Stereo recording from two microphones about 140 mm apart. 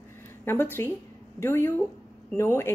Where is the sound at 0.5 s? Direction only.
15° left (ahead or behind).